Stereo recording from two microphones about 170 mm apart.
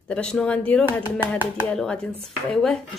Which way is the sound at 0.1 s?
5° left (ahead or behind).